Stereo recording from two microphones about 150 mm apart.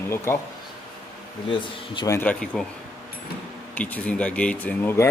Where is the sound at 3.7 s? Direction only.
10° left (ahead or behind).